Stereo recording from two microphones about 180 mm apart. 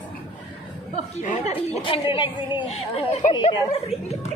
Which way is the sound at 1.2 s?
45° left (ahead or behind).